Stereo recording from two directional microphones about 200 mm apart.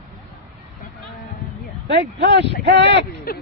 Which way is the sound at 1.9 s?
60° right (ahead or behind).